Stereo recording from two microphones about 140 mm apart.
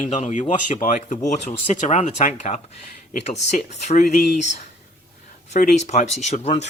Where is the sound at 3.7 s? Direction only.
55° left (ahead or behind).